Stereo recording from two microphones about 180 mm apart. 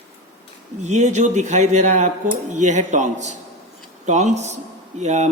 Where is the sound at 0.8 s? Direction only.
40° right (ahead or behind).